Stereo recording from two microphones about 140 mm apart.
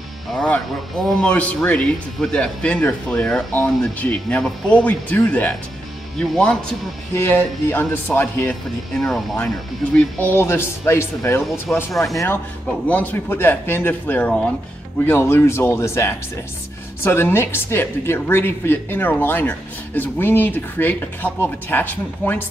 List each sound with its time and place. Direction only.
0.3 s speech: 5° left (ahead or behind)
9.9 s speech: 15° left (ahead or behind)